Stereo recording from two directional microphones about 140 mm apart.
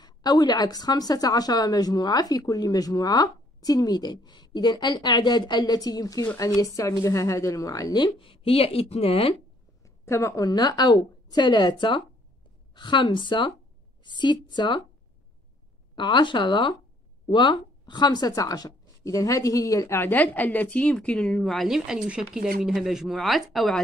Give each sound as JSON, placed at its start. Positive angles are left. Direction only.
{"t": 0.0, "sound": "a woman's voice", "side_deg": 30}
{"t": 9.8, "sound": "a sound", "side_deg": 20}
{"t": 10.4, "sound": "speech", "side_deg": 30}
{"t": 15.9, "sound": "speech", "side_deg": 35}